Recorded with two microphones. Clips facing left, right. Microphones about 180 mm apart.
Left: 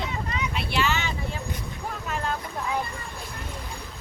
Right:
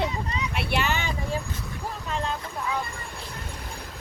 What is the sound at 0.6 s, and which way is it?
Speech, 60° right (ahead or behind).